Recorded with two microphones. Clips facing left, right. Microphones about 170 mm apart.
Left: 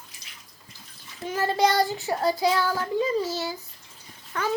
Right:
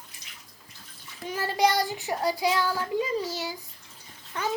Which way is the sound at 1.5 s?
15° right (ahead or behind).